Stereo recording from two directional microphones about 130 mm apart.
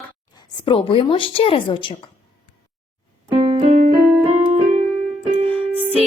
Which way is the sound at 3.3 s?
40° right (ahead or behind).